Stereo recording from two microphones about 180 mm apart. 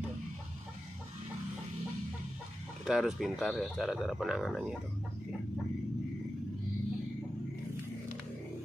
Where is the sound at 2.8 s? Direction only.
5° right (ahead or behind).